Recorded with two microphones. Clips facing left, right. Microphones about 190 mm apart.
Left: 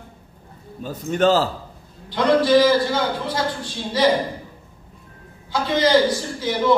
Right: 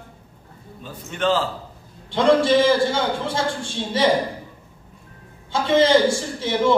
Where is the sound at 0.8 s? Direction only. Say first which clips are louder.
Left 5 dB; 40° left (ahead or behind).